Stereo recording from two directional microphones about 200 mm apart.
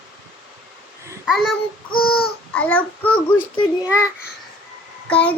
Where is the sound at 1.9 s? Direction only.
50° left (ahead or behind).